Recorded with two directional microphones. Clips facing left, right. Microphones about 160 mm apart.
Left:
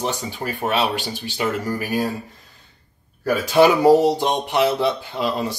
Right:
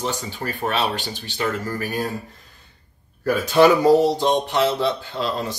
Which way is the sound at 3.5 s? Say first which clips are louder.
Left 1 dB; 15° left (ahead or behind).